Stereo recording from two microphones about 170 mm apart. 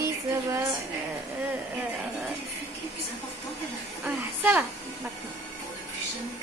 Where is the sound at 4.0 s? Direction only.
10° right (ahead or behind).